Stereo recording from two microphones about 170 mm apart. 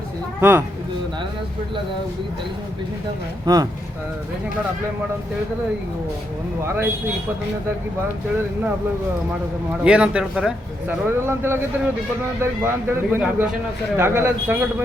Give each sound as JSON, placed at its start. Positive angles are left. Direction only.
{"t": 0.3, "sound": "speech", "side_deg": -10}
{"t": 3.4, "sound": "speech", "side_deg": -20}
{"t": 6.7, "sound": "speech", "side_deg": -15}
{"t": 9.8, "sound": "speech", "side_deg": -5}